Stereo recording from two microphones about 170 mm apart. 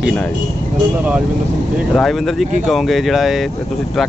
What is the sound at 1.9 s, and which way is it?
Speech, centre (ahead or behind).